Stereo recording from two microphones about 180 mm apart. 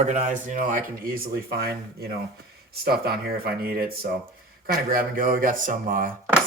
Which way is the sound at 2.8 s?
60° right (ahead or behind).